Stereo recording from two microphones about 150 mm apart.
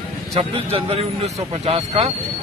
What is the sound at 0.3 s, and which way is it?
Speech, 40° right (ahead or behind).